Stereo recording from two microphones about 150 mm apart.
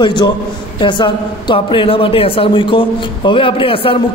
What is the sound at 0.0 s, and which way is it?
A man's voice, 30° left (ahead or behind).